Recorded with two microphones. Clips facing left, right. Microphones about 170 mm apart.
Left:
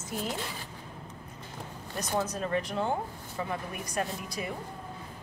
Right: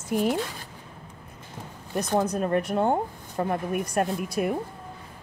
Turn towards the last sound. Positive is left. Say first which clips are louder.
# right 9 dB
turn(degrees=-55)  # may be behind; listen again after turning